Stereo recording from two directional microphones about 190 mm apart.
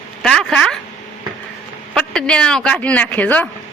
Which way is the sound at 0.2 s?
5° left (ahead or behind).